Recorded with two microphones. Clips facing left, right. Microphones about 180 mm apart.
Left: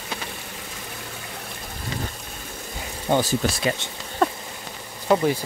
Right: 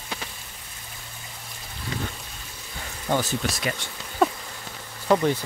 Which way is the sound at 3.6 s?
25° left (ahead or behind).